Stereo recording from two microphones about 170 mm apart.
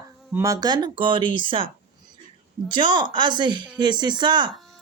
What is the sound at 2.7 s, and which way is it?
Speech, 30° right (ahead or behind).